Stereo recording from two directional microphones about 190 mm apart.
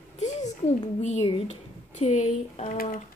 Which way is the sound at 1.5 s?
35° left (ahead or behind).